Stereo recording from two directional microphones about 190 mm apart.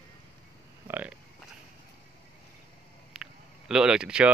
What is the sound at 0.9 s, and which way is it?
Speech, 10° right (ahead or behind).